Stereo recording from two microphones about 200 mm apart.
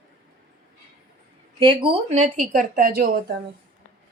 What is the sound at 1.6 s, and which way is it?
Speech, 25° right (ahead or behind).